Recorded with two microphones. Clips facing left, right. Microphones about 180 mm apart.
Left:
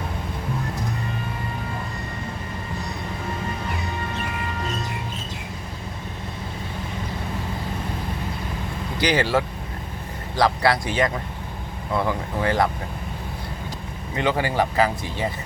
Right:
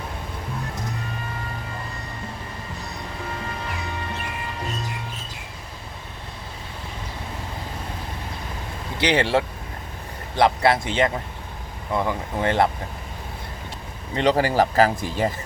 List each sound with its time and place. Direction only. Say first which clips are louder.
9.0 s speech: right 1 dB; 25° right (ahead or behind)
12.4 s speech: right 1 dB; 25° right (ahead or behind)
14.2 s speech: right 3 dB; 35° right (ahead or behind)